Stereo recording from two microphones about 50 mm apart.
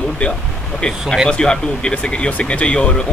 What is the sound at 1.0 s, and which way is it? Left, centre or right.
Speech, centre.